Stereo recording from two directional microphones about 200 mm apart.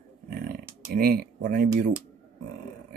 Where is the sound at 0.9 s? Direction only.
50° right (ahead or behind).